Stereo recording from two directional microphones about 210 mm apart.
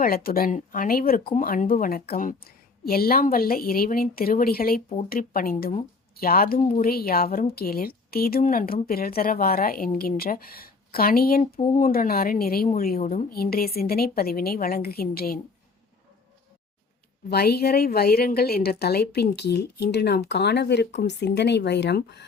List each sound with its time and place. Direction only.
0.0 s a woman's voice: 45° left (ahead or behind)
11.5 s speech: 25° left (ahead or behind)
11.8 s a woman's voice: 45° left (ahead or behind)
17.2 s a woman's voice: 50° left (ahead or behind)